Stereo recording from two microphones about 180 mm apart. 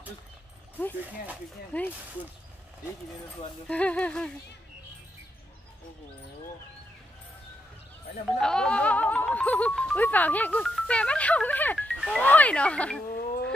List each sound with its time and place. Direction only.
1.0 s speech: 10° right (ahead or behind)
1.7 s speech: 10° left (ahead or behind)
3.6 s speech: 5° left (ahead or behind)
8.4 s speech: 5° left (ahead or behind)
13.1 s a sound: 60° left (ahead or behind)